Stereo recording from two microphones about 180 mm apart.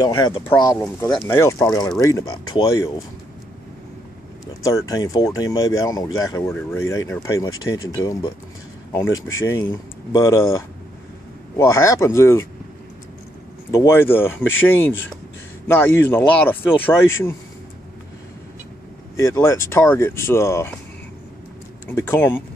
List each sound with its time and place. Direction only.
0.0 s speech: 20° left (ahead or behind)
4.6 s speech: 20° left (ahead or behind)
9.4 s speech: 15° left (ahead or behind)
13.7 s speech: 15° left (ahead or behind)
19.1 s speech: 15° left (ahead or behind)
21.8 s speech: 10° left (ahead or behind)